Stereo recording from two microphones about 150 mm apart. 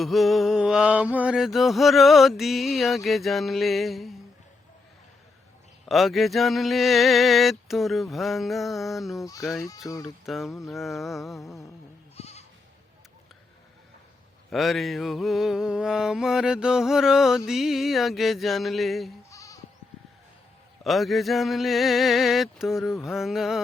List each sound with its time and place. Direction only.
0.0 s mantra: centre (ahead or behind)
5.8 s mantra: centre (ahead or behind)
12.1 s goat: 45° left (ahead or behind)
14.5 s mantra: centre (ahead or behind)
19.3 s sheep: 20° left (ahead or behind)
20.8 s mantra: centre (ahead or behind)